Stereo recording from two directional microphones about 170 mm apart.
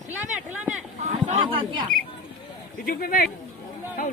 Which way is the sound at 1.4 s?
30° right (ahead or behind).